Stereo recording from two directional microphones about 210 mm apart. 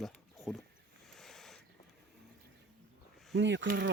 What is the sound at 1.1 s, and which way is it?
Owl, centre (ahead or behind).